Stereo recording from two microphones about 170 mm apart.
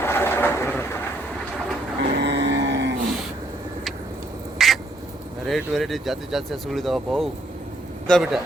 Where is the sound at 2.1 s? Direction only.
90° right.